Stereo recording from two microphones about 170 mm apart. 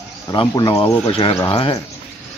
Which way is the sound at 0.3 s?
25° left (ahead or behind).